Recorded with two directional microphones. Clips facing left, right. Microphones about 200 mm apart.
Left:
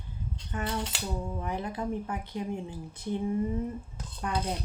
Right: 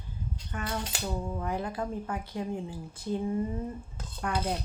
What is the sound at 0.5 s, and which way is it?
A woman's voice, 20° left (ahead or behind).